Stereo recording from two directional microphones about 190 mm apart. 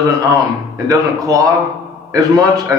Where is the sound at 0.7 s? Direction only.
15° right (ahead or behind).